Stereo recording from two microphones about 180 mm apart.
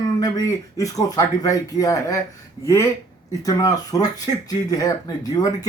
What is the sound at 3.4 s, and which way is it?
Speech, 20° left (ahead or behind).